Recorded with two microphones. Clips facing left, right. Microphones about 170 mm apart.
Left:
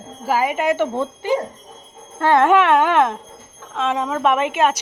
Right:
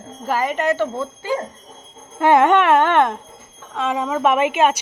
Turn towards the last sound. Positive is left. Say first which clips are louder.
# right 1 dB
turn(degrees=-5)  # may be behind; listen again after turning